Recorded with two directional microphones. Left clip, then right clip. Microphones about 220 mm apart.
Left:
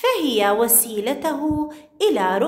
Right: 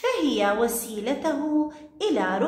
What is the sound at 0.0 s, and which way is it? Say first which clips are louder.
A woman's voice: left 5 dB; 45° left (ahead or behind).